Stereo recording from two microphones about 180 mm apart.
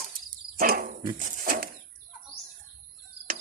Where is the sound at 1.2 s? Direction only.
50° right (ahead or behind).